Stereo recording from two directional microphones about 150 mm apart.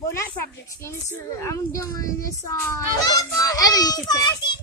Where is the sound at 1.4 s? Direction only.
20° left (ahead or behind).